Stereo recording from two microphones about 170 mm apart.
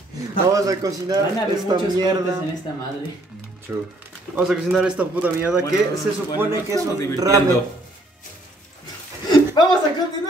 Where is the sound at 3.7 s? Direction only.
10° right (ahead or behind).